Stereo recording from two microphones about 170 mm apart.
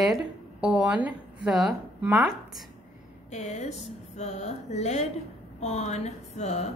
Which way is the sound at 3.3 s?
40° left (ahead or behind).